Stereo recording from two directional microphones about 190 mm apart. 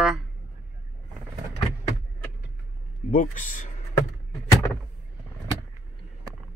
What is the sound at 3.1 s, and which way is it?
Speech, 45° left (ahead or behind).